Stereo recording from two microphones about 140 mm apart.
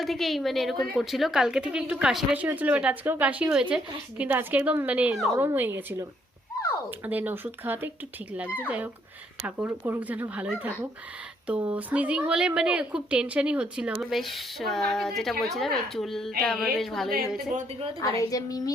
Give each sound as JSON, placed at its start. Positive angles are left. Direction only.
{"t": 0.0, "sound": "a woman's voice", "side_deg": 0}
{"t": 17.1, "sound": "a woman's voice", "side_deg": -90}
{"t": 18.0, "sound": "a woman's voice", "side_deg": 25}